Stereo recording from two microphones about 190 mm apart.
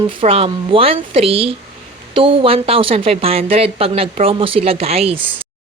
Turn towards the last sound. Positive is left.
turn(degrees=-30)  # may be behind; listen again after turning